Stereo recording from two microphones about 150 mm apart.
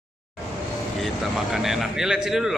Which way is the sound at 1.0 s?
Centre (ahead or behind).